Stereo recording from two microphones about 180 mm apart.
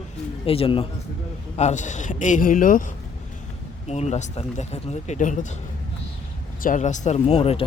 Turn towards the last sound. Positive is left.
turn(degrees=35)  # may be behind; listen again after turning